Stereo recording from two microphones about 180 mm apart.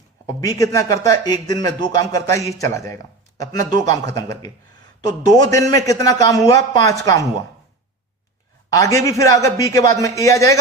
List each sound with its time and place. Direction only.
0.3 s a man's voice: 20° left (ahead or behind)
8.7 s a man's voice: 15° left (ahead or behind)